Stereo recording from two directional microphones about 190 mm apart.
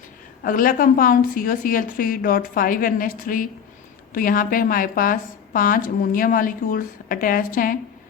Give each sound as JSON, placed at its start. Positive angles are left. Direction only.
{"t": 0.4, "sound": "a woman's voice", "side_deg": 45}